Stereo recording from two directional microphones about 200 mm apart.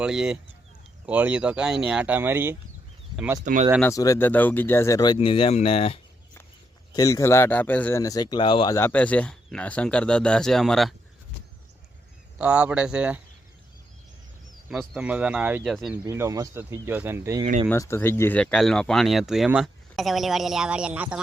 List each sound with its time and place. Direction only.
0.0 s speech: 5° right (ahead or behind)
3.4 s speech: 40° right (ahead or behind)
3.8 s speech: 15° left (ahead or behind); by 6.0 s 30° left (ahead or behind)
6.9 s speech: 15° left (ahead or behind); by 10.9 s centre (ahead or behind)
12.4 s speech: 5° right (ahead or behind)
14.7 s speech: 5° right (ahead or behind)
16.0 s speech: 15° right (ahead or behind)
17.4 s speech: 35° right (ahead or behind)
17.7 s speech: 15° left (ahead or behind); by 21.2 s 5° right (ahead or behind)